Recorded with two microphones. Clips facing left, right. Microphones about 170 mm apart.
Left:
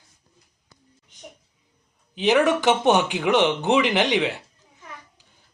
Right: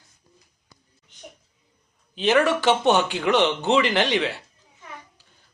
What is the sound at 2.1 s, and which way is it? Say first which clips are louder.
A man's voice: left 1 dB; 15° left (ahead or behind).